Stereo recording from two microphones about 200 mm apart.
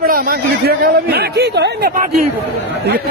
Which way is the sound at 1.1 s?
55° right (ahead or behind).